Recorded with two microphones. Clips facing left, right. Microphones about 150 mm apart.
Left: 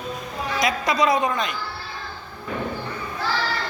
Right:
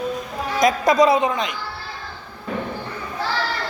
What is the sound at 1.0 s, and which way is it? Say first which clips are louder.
Speech: right 3 dB; 25° right (ahead or behind).